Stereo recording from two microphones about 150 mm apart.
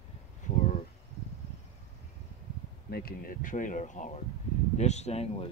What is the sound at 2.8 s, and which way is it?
Speech, 85° left.